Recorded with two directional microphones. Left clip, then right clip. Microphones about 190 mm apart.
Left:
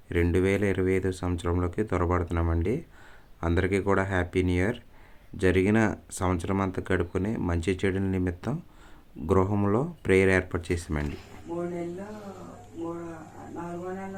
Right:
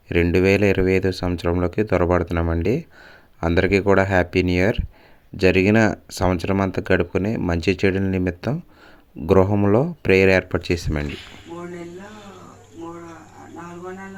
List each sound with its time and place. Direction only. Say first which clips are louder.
0.1 s speech: right 8 dB; 25° right (ahead or behind)